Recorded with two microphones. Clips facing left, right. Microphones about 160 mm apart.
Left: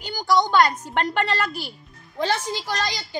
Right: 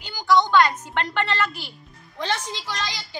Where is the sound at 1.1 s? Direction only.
40° left (ahead or behind).